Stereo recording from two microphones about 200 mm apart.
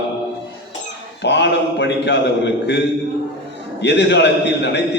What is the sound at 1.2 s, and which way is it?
A man's voice, 60° left (ahead or behind).